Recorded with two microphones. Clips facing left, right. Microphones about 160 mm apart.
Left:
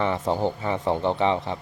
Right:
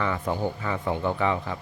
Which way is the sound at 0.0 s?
20° left (ahead or behind).